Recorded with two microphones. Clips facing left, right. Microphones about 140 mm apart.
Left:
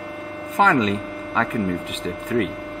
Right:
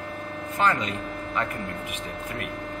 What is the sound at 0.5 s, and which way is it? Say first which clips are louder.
Speech: left 7 dB; 90° left.